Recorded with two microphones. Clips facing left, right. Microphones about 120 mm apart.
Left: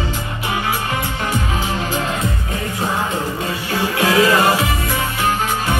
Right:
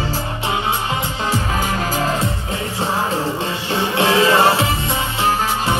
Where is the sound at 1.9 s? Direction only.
40° right (ahead or behind).